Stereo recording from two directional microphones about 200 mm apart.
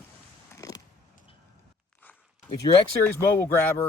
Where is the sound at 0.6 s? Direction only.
15° left (ahead or behind).